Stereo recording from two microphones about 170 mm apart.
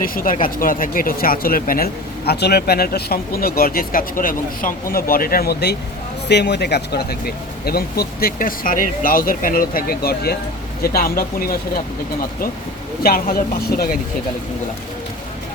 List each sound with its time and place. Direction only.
0.0 s speech: 55° left (ahead or behind)
6.2 s speech: 90° left; by 11.8 s 60° left (ahead or behind)
13.0 s speech: 60° left (ahead or behind)